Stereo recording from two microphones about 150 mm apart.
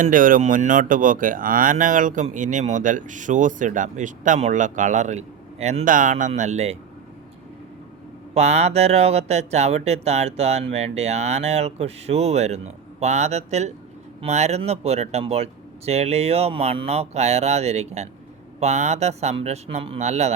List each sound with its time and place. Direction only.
0.0 s speech: 65° right (ahead or behind); by 6.7 s 45° right (ahead or behind)
8.4 s speech: 45° right (ahead or behind)